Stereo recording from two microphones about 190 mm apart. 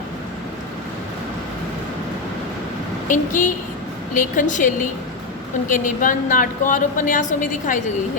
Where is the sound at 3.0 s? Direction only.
45° left (ahead or behind).